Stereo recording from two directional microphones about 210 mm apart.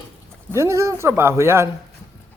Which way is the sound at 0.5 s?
15° right (ahead or behind).